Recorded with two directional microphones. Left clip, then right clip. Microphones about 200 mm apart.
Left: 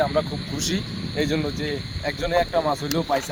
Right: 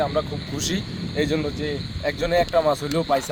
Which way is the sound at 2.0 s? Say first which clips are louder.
Right 2 dB; 35° right (ahead or behind).